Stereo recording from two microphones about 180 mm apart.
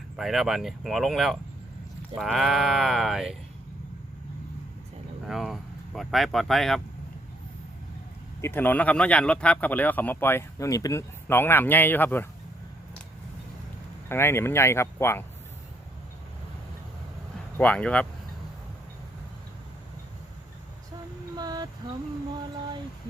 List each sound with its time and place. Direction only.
0.2 s speech: centre (ahead or behind)
5.2 s speech: centre (ahead or behind)
8.4 s speech: 15° left (ahead or behind)
14.1 s speech: 15° left (ahead or behind)
17.6 s speech: 5° left (ahead or behind)
21.3 s female singing: 20° right (ahead or behind)